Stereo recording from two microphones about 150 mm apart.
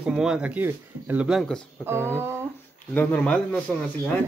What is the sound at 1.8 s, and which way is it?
Speech, 15° right (ahead or behind).